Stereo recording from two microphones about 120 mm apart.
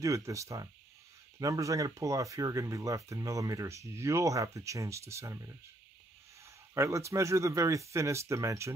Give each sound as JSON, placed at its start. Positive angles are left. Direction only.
{"t": 0.0, "sound": "speech", "side_deg": -25}
{"t": 6.7, "sound": "speech", "side_deg": -25}